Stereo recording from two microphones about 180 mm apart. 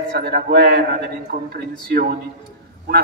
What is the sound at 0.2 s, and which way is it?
A man's voice, 60° right (ahead or behind).